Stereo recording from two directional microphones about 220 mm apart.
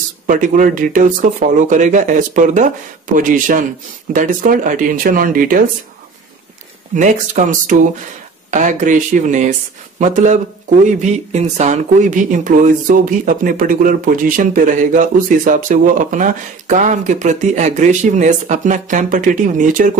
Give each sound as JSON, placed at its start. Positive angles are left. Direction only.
{"t": 0.3, "sound": "speech", "side_deg": -35}
{"t": 7.0, "sound": "speech", "side_deg": -35}